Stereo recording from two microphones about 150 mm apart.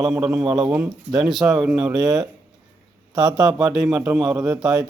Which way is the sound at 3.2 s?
25° right (ahead or behind).